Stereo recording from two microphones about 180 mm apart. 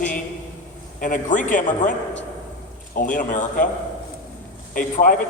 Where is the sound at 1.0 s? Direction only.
45° left (ahead or behind).